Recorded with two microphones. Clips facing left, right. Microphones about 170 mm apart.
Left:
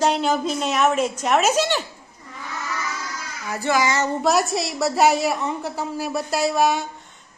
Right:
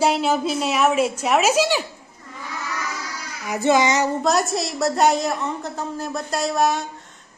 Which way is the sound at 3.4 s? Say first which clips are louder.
Right 3 dB; 20° right (ahead or behind).